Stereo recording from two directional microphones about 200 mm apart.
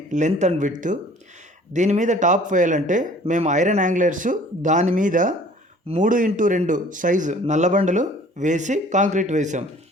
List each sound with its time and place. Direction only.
0.1 s speech: 35° right (ahead or behind)